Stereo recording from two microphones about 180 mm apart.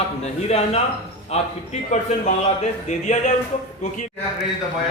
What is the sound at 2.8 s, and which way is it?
Speech, 40° left (ahead or behind).